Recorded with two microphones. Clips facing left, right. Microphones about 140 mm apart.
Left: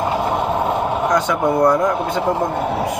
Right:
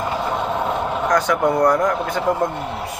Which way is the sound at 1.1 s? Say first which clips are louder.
Right 1 dB; 25° left (ahead or behind).